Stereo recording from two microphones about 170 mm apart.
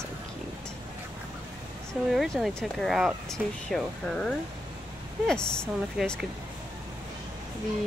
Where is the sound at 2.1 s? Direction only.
Centre (ahead or behind).